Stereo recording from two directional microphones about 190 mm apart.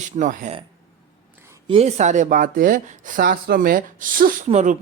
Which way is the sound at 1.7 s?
35° right (ahead or behind).